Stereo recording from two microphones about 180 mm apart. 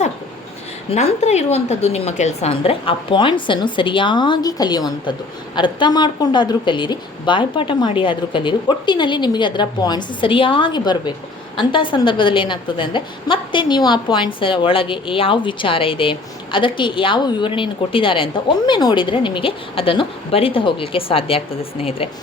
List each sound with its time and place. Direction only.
0.9 s a woman's voice: 40° left (ahead or behind)